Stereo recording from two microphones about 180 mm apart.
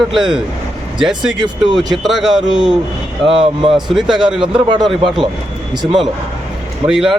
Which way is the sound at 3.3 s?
30° right (ahead or behind).